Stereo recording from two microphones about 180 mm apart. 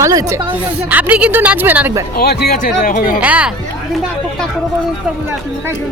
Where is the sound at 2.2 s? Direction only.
60° left (ahead or behind).